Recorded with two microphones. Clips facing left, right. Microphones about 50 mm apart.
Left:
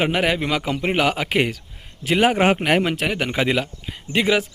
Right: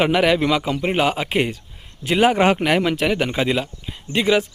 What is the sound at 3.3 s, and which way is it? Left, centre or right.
Speech, left.